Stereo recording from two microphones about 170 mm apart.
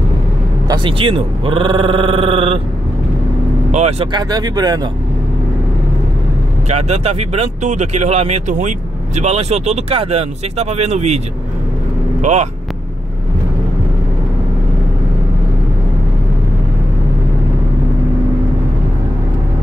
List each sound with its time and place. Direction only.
0.7 s speech: 30° right (ahead or behind)
3.7 s speech: 40° right (ahead or behind)
4.1 s speech: 25° right (ahead or behind)
6.7 s speech: 40° right (ahead or behind)
12.2 s speech: 45° right (ahead or behind)